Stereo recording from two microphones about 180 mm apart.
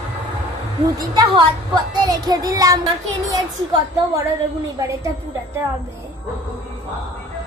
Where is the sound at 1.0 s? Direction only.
25° right (ahead or behind).